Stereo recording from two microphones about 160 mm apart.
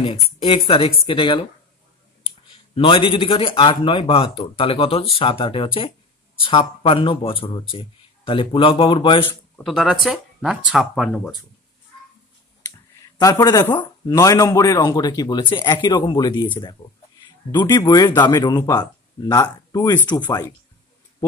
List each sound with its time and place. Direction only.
0.0 s speech: 35° left (ahead or behind)
9.7 s speech: centre (ahead or behind)
13.2 s speech: 20° left (ahead or behind)
17.7 s speech: 25° left (ahead or behind)